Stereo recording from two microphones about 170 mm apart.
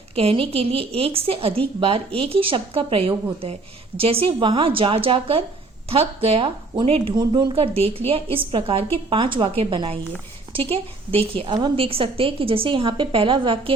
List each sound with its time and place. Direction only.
0.2 s speech: 35° right (ahead or behind)